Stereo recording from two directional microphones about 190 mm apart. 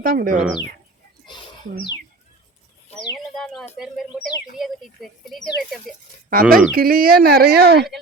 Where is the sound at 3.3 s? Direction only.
Centre (ahead or behind).